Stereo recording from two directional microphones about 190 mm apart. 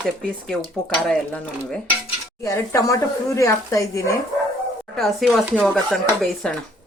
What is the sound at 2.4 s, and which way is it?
Speech, 15° left (ahead or behind).